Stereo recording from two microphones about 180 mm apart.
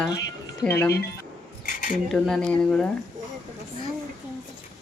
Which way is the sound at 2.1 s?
5° left (ahead or behind).